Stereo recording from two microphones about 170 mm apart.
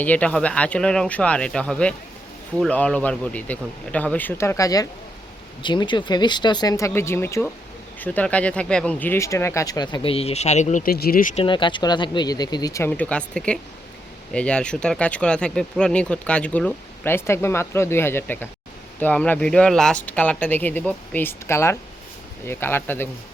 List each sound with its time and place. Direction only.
0.0 s speech: 10° left (ahead or behind); by 10.9 s 45° left (ahead or behind)
10.9 s speech: 65° left (ahead or behind)
11.4 s speech: 30° left (ahead or behind)
12.9 s speech: 5° left (ahead or behind)